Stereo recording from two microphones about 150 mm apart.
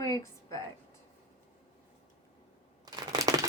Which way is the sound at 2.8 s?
25° right (ahead or behind).